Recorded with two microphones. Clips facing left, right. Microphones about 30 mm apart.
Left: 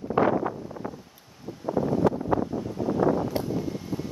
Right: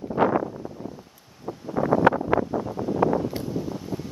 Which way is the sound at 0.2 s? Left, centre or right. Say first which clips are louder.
Even; left.